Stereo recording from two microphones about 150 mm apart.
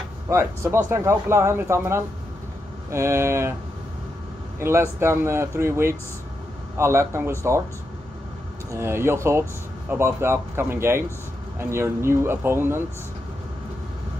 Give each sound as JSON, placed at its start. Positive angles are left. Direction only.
{"t": 0.3, "sound": "speech", "side_deg": -15}
{"t": 4.6, "sound": "speech", "side_deg": -15}
{"t": 8.7, "sound": "speech", "side_deg": -15}